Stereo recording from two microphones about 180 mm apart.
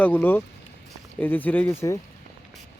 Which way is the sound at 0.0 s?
10° left (ahead or behind).